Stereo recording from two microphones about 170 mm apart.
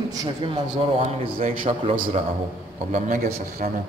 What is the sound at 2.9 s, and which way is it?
Speech, 50° right (ahead or behind).